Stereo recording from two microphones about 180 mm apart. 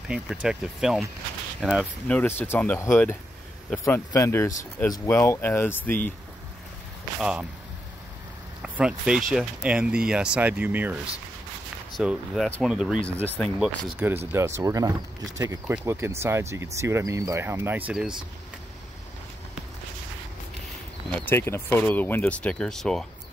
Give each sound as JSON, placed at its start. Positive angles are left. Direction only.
{"t": 0.1, "sound": "speech", "side_deg": -5}
{"t": 2.0, "sound": "speech", "side_deg": 10}
{"t": 7.2, "sound": "speech", "side_deg": -5}
{"t": 8.6, "sound": "speech", "side_deg": -5}
{"t": 12.0, "sound": "speech", "side_deg": -5}
{"t": 12.4, "sound": "speech", "side_deg": 5}
{"t": 12.7, "sound": "speech", "side_deg": -5}
{"t": 15.6, "sound": "speech", "side_deg": -5}
{"t": 21.3, "sound": "speech", "side_deg": 15}